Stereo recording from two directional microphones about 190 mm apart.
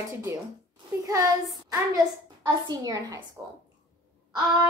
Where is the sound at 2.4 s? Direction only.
20° right (ahead or behind).